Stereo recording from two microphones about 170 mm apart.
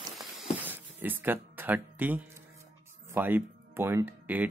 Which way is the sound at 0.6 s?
10° right (ahead or behind).